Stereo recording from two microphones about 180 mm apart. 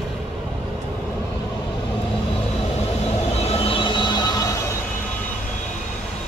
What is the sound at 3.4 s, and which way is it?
Vehicle, 35° left (ahead or behind).